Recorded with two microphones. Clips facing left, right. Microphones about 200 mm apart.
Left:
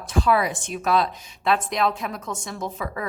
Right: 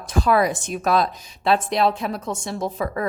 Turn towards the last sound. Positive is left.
turn(degrees=-35)  # may be behind; listen again after turning